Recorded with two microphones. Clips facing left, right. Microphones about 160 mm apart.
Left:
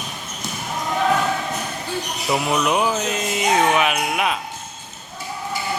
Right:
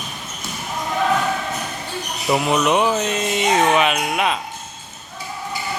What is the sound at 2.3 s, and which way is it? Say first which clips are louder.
Speech: right 3 dB; centre (ahead or behind).